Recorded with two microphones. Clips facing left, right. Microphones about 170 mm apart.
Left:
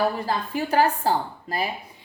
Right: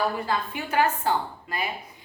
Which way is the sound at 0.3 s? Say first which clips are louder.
Left 3 dB; 35° left (ahead or behind).